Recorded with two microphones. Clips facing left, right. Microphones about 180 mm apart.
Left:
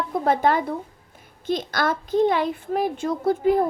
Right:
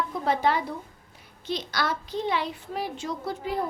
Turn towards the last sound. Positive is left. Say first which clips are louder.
# left 10 dB
turn(degrees=50)  # may be behind; listen again after turning